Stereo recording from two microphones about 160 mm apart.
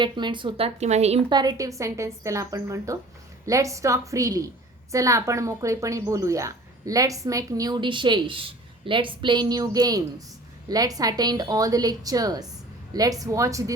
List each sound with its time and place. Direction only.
0.0 s speech: 30° right (ahead or behind)
1.3 s a woman's voice: 25° right (ahead or behind)